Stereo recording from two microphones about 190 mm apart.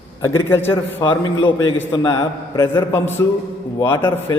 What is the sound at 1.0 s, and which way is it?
A man's voice, 25° left (ahead or behind).